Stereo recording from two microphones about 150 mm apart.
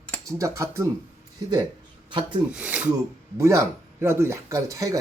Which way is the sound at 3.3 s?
20° right (ahead or behind).